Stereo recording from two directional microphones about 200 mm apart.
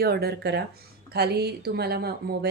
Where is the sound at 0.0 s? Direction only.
50° right (ahead or behind).